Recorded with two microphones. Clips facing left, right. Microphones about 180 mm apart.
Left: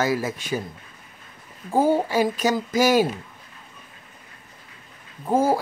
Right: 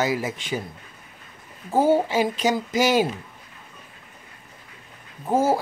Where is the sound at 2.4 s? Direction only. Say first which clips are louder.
Left 1 dB; 20° right (ahead or behind).